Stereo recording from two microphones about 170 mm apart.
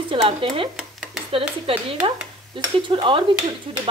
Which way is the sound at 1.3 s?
35° right (ahead or behind).